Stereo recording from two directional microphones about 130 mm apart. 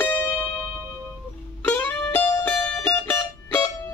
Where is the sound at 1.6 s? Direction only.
15° left (ahead or behind).